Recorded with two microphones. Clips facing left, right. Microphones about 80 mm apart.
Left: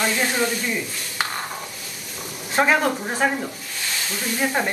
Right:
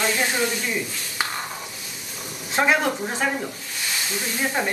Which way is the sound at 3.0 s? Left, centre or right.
Centre.